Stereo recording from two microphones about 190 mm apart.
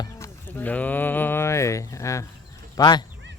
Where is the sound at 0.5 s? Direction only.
10° left (ahead or behind).